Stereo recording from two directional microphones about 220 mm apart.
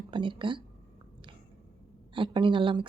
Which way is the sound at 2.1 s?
20° right (ahead or behind).